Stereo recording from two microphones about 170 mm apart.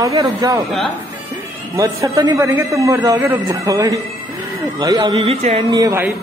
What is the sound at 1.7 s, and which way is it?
Speech, 20° right (ahead or behind).